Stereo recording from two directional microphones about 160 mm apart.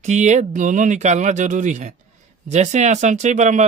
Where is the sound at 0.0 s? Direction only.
45° right (ahead or behind).